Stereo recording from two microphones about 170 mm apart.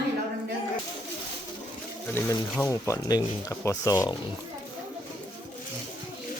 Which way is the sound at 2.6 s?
15° left (ahead or behind).